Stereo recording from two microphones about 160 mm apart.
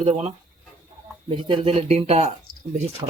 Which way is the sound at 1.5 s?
35° right (ahead or behind).